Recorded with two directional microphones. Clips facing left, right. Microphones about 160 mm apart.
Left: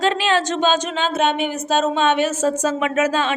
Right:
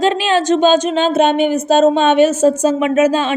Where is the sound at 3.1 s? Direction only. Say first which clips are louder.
Right 4 dB; 15° right (ahead or behind).